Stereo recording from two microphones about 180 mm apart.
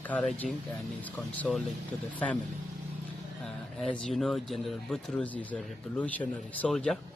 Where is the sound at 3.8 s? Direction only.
Centre (ahead or behind).